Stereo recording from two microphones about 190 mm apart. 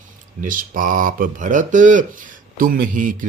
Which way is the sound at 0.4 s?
45° right (ahead or behind).